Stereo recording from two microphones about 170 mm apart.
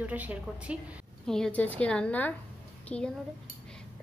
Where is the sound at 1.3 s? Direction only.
5° left (ahead or behind).